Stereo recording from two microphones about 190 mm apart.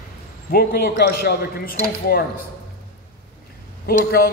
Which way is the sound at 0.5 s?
55° left (ahead or behind).